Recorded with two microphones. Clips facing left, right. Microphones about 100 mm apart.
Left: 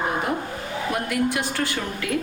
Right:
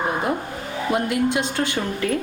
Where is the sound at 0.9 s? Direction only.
20° right (ahead or behind).